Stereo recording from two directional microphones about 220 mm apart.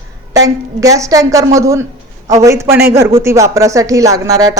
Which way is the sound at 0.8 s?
15° right (ahead or behind).